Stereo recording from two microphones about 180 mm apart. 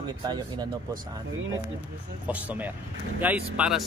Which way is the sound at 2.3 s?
10° right (ahead or behind).